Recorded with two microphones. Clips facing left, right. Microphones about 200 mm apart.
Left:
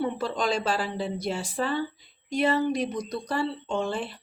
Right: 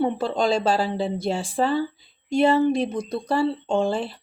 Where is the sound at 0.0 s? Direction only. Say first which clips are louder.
Right 5 dB; 30° right (ahead or behind).